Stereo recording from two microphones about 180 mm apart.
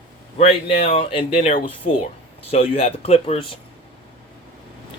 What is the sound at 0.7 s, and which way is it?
Speech, 35° left (ahead or behind).